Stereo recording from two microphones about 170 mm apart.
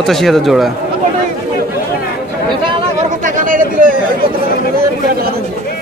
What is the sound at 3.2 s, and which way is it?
Chatter, 50° right (ahead or behind).